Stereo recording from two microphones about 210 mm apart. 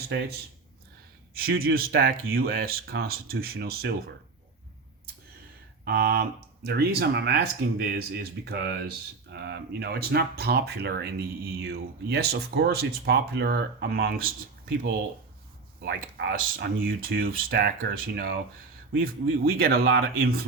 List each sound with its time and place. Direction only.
0.1 s speech: 55° right (ahead or behind)
1.3 s speech: 45° right (ahead or behind)
5.8 s speech: 50° right (ahead or behind)